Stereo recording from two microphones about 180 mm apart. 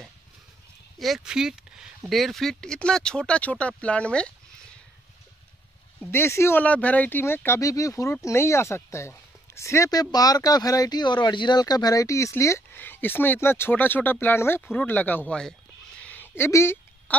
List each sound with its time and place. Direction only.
0.9 s speech: centre (ahead or behind)
6.1 s speech: 15° left (ahead or behind)
16.0 s a sound: 10° left (ahead or behind)